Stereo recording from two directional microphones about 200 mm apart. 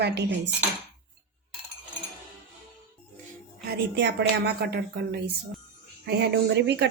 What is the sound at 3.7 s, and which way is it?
A woman's voice, 55° right (ahead or behind).